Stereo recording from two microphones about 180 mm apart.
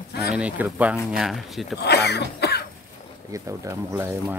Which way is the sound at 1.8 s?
65° left (ahead or behind).